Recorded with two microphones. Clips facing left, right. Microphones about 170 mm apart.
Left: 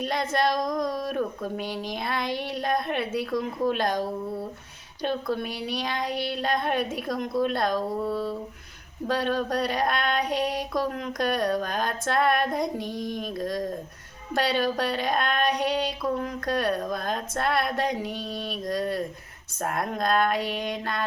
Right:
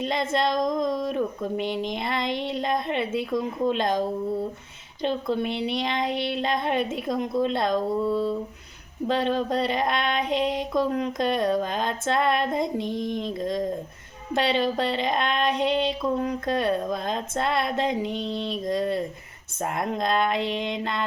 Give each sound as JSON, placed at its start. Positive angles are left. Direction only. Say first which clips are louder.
{"t": 0.0, "sound": "female singing", "louder": "right 1 dB", "side_deg": -25}